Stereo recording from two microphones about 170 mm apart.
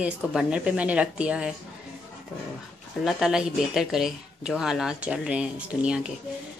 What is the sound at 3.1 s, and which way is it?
Speech, 5° right (ahead or behind).